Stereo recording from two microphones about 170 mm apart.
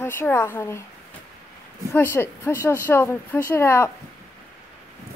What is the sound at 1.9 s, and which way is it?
A woman's voice, 15° left (ahead or behind).